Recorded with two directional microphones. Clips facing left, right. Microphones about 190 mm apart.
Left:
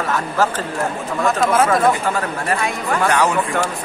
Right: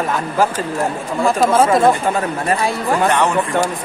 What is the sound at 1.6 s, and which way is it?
Speech, 25° right (ahead or behind).